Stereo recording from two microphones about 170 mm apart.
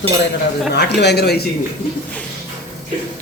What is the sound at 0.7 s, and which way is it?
Speech, 80° left.